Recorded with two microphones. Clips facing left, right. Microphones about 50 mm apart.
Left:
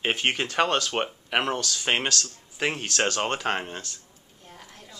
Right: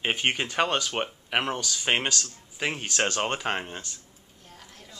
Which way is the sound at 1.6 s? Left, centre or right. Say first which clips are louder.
Even; centre.